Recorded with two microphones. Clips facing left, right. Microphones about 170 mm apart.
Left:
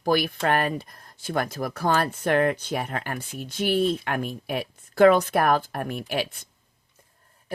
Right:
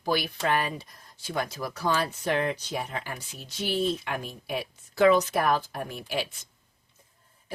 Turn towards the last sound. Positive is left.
turn(degrees=60)  # may be behind; listen again after turning